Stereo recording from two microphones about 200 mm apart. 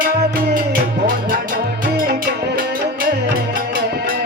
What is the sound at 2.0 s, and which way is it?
Music, 50° right (ahead or behind).